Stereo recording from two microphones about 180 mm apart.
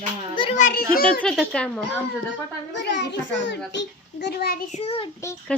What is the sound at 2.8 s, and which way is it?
A child's voice, 75° left (ahead or behind).